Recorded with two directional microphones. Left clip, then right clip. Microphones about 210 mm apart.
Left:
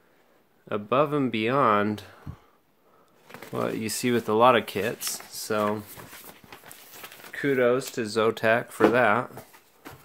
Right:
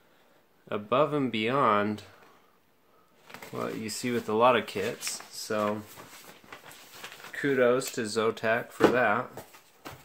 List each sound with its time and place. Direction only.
0.7 s speech: 25° left (ahead or behind)
3.5 s speech: 40° left (ahead or behind)
7.0 s speech: 30° left (ahead or behind)